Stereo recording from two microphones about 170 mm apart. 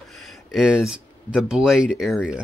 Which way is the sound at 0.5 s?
5° right (ahead or behind).